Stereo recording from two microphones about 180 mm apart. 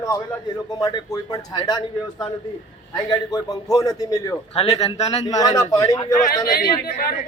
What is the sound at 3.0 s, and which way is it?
A man's voice, 20° left (ahead or behind).